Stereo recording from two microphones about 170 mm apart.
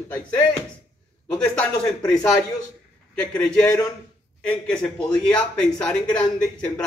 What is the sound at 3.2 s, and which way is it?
Speech, 5° left (ahead or behind).